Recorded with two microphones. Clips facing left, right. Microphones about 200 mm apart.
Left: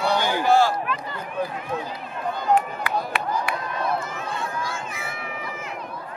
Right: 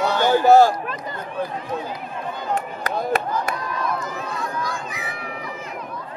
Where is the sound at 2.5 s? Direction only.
45° right (ahead or behind).